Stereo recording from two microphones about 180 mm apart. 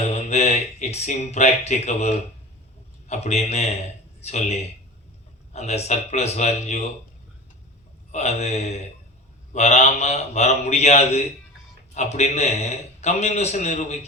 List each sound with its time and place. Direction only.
0.1 s a man's voice: 40° left (ahead or behind)
8.1 s a man's voice: 40° left (ahead or behind)